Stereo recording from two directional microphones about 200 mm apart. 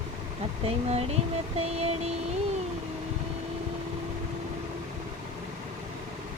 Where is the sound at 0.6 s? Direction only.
30° right (ahead or behind).